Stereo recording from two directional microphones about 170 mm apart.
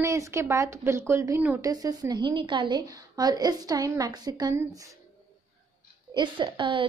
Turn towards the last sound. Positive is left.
turn(degrees=-30)  # may be behind; listen again after turning